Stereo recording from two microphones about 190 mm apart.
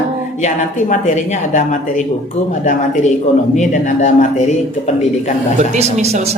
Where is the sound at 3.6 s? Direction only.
40° left (ahead or behind).